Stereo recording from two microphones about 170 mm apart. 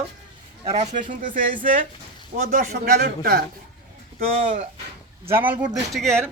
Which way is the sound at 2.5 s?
60° right (ahead or behind).